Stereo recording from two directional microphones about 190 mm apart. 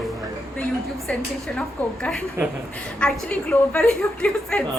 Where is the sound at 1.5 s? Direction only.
5° left (ahead or behind).